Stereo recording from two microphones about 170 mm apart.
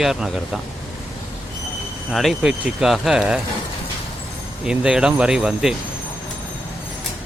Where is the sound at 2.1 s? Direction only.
Centre (ahead or behind).